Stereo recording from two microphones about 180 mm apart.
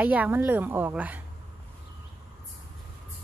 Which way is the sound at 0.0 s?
10° right (ahead or behind).